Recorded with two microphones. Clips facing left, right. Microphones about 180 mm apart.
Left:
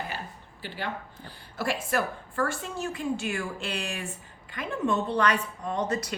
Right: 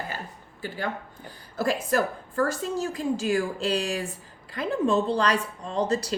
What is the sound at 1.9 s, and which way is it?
A woman's voice, 40° right (ahead or behind).